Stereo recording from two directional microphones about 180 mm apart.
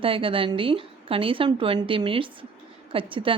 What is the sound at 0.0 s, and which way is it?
A woman's voice, 30° right (ahead or behind).